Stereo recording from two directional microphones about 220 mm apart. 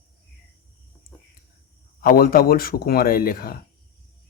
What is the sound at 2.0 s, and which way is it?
Speech, 40° left (ahead or behind).